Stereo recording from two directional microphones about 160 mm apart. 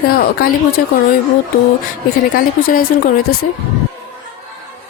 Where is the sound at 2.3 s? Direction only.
65° left (ahead or behind).